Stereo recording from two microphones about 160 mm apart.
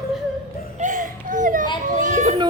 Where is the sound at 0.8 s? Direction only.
55° right (ahead or behind).